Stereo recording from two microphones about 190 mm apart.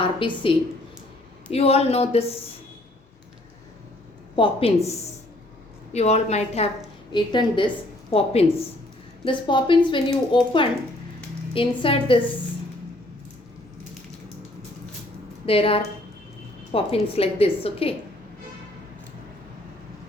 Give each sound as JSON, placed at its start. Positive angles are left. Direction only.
{"t": 0.0, "sound": "a woman's voice", "side_deg": 25}
{"t": 1.5, "sound": "a woman's voice", "side_deg": 30}
{"t": 4.4, "sound": "a woman's voice", "side_deg": 25}
{"t": 5.9, "sound": "a woman's voice", "side_deg": 35}
{"t": 7.1, "sound": "a woman's voice", "side_deg": 25}
{"t": 15.4, "sound": "a woman's voice", "side_deg": 30}